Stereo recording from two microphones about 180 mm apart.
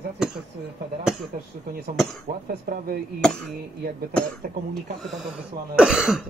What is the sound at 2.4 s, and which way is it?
Speech, 55° right (ahead or behind).